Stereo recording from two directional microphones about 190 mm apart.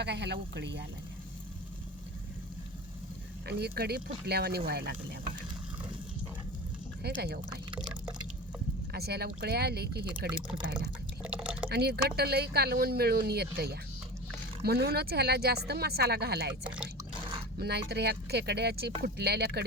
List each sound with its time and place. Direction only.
0.0 s speech: 60° right (ahead or behind)
3.4 s speech: 60° right (ahead or behind)
7.0 s speech: 60° right (ahead or behind)
7.7 s drip: 25° right (ahead or behind)
8.9 s speech: 55° right (ahead or behind)
10.8 s drip: 5° right (ahead or behind)
11.7 s speech: 55° right (ahead or behind)
17.6 s speech: 60° right (ahead or behind)